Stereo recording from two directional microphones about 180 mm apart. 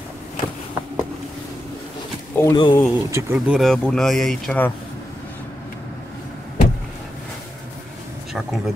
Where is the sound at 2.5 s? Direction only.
25° left (ahead or behind).